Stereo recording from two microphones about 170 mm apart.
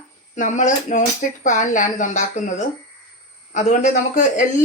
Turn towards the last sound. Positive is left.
turn(degrees=45)  # may be behind; listen again after turning